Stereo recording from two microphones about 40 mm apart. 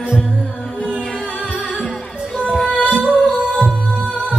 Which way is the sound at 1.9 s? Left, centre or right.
Left.